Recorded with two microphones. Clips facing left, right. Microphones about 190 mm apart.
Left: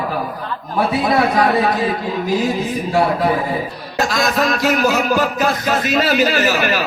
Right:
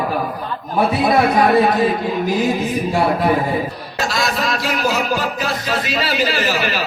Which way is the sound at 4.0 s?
50° left (ahead or behind).